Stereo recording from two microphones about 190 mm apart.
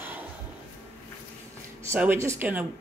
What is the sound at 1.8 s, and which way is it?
Speech, 10° right (ahead or behind).